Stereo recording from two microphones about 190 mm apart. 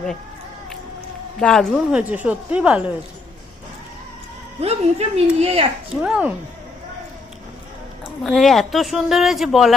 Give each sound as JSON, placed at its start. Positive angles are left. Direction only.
{"t": 1.4, "sound": "speech", "side_deg": 5}
{"t": 4.6, "sound": "a woman's voice", "side_deg": -35}
{"t": 5.9, "sound": "speech", "side_deg": -5}
{"t": 8.0, "sound": "speech", "side_deg": 0}